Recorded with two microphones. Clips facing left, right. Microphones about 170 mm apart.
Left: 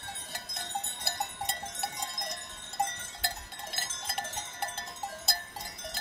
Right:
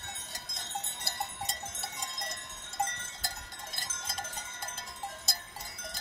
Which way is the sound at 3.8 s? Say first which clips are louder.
Left 3 dB; 65° left (ahead or behind).